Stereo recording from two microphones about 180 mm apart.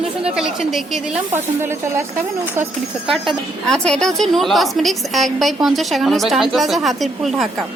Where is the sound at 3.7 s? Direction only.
5° left (ahead or behind).